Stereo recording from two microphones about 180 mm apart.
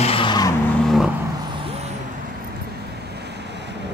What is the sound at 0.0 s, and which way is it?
Vehicle, 30° left (ahead or behind).